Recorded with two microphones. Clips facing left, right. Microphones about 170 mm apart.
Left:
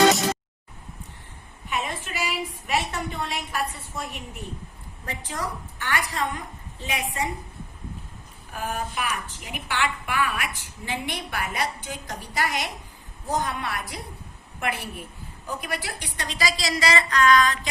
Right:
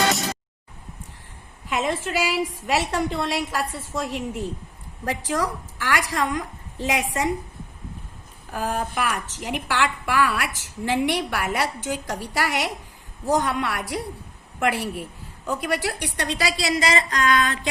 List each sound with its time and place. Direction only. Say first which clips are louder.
1.6 s a woman's voice: right 6 dB; 90° right
9.0 s a woman's voice: right 4 dB; 80° right; by 16.9 s 55° right (ahead or behind)
17.1 s a sound: left 2 dB; 50° right (ahead or behind)